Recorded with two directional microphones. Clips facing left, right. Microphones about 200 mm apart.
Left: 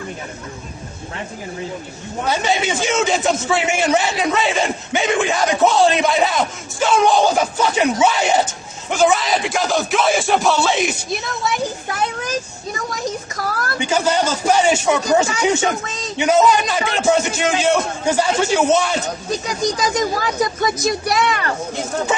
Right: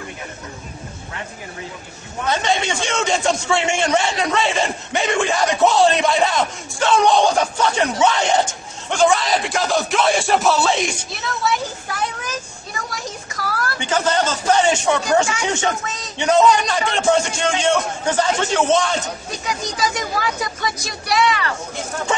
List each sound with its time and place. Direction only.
2.2 s a man's voice: 5° left (ahead or behind)
13.4 s a sound: 45° left (ahead or behind)
13.7 s a man's voice: 10° left (ahead or behind)
19.4 s speech: 40° left (ahead or behind)